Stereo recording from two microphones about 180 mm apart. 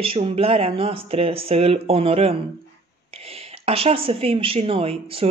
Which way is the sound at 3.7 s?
30° right (ahead or behind).